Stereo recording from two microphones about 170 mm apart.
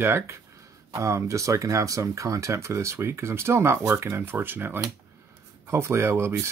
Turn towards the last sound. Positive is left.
turn(degrees=-15)  # may be behind; listen again after turning